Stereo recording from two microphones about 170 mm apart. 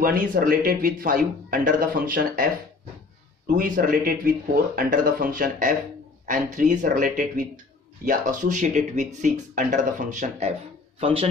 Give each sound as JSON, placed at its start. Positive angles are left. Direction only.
{"t": 0.0, "sound": "speech", "side_deg": -55}
{"t": 3.5, "sound": "speech", "side_deg": -55}
{"t": 11.0, "sound": "speech", "side_deg": -30}